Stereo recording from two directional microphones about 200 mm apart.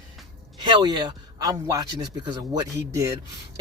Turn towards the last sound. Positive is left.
turn(degrees=-15)  # may be behind; listen again after turning